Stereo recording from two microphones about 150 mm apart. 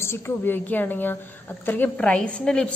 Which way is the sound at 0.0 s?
15° left (ahead or behind).